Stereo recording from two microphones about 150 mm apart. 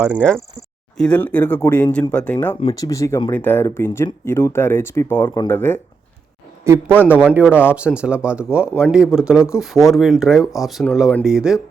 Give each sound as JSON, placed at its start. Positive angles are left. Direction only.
{"t": 0.2, "sound": "speech", "side_deg": 5}
{"t": 2.7, "sound": "speech", "side_deg": 20}
{"t": 6.7, "sound": "speech", "side_deg": -15}
{"t": 8.6, "sound": "speech", "side_deg": 15}
{"t": 8.9, "sound": "speech", "side_deg": -5}